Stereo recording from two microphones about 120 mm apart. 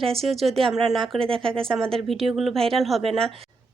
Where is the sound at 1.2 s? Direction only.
45° right (ahead or behind).